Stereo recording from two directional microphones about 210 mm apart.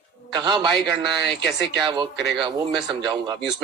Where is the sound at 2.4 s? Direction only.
20° right (ahead or behind).